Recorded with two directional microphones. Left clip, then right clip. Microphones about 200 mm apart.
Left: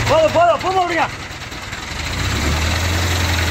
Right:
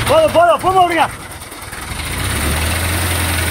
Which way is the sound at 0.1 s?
50° right (ahead or behind).